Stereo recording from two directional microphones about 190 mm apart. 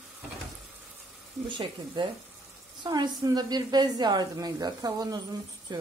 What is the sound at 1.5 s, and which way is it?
A woman's voice, 25° right (ahead or behind).